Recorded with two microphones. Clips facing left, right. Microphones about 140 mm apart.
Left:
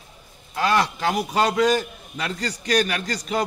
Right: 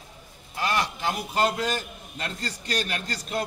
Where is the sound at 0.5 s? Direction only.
90° left.